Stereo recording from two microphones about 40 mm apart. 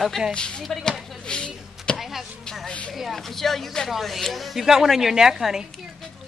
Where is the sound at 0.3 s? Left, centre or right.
Left.